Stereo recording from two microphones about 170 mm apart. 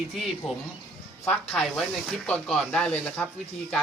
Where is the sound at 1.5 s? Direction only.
5° left (ahead or behind).